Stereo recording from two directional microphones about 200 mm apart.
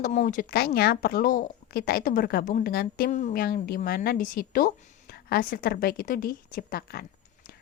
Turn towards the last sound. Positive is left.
turn(degrees=50)  # may be behind; listen again after turning